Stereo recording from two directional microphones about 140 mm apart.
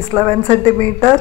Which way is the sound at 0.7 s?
40° right (ahead or behind).